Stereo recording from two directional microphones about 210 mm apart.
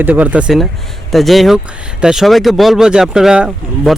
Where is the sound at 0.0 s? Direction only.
5° right (ahead or behind).